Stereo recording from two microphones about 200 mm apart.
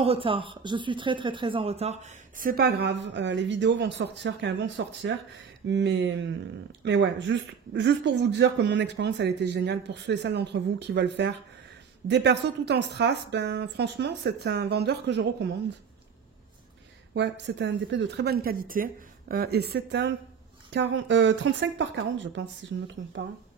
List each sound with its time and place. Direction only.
0.0 s speech: 25° right (ahead or behind); by 15.5 s 60° right (ahead or behind)
17.1 s speech: 60° right (ahead or behind)